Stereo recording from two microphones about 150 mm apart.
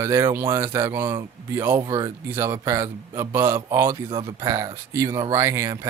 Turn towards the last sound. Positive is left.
turn(degrees=-20)  # may be behind; listen again after turning